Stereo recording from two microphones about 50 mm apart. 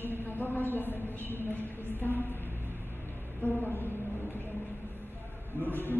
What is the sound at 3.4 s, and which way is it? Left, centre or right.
Speech, left.